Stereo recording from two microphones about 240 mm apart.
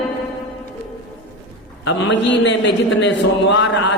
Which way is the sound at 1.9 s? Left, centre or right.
Left.